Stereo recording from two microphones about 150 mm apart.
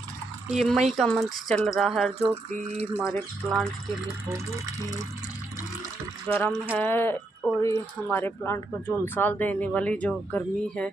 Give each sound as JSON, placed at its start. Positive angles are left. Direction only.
{"t": 0.5, "sound": "speech", "side_deg": 0}
{"t": 2.5, "sound": "a sound", "side_deg": -45}
{"t": 3.0, "sound": "speech", "side_deg": 0}
{"t": 6.2, "sound": "speech", "side_deg": 10}